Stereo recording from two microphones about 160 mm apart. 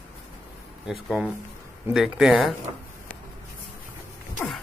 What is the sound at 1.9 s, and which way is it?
Speech, centre (ahead or behind).